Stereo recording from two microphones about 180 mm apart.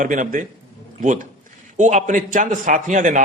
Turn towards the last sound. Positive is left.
turn(degrees=-45)  # may be behind; listen again after turning